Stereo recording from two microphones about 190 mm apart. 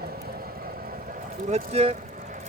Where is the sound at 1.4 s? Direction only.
35° right (ahead or behind).